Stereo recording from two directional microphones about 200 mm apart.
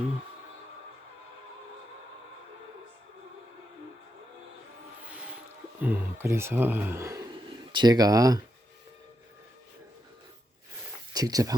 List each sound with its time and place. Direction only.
5.8 s speech: 10° right (ahead or behind)
11.1 s speech: 20° right (ahead or behind)